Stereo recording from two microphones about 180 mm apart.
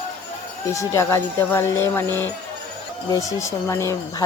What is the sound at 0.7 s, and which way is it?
Speech, 15° left (ahead or behind).